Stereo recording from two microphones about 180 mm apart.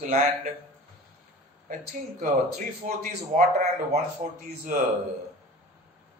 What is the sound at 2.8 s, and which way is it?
Speech, 45° right (ahead or behind).